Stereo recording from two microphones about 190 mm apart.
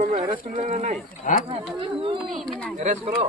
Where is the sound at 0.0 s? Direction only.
40° right (ahead or behind).